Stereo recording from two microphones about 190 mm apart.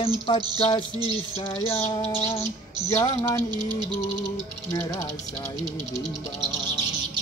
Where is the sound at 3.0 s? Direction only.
15° left (ahead or behind).